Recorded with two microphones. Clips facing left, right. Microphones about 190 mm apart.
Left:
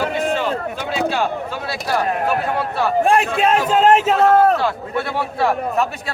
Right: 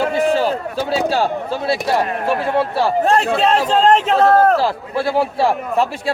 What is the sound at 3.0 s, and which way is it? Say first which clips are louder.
A man's voice: left 1 dB; 10° left (ahead or behind).